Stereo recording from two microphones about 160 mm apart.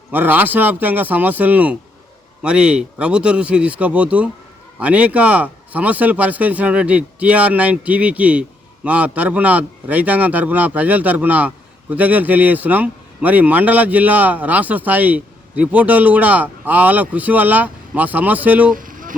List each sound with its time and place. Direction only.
0.1 s speech: 10° right (ahead or behind)
18.7 s vehicle: 60° right (ahead or behind)